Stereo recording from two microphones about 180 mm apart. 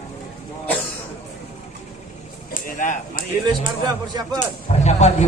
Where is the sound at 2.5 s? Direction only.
50° left (ahead or behind).